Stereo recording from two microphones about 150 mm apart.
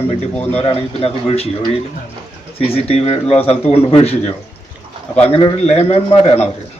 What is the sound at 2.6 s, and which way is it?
Speech, 40° left (ahead or behind).